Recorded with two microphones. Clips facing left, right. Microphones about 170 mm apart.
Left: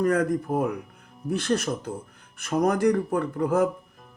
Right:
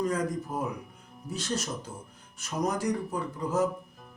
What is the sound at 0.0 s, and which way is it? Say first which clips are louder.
Speech: left 7 dB; 60° left (ahead or behind).